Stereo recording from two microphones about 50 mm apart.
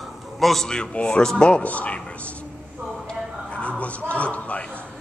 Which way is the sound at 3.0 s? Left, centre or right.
Left.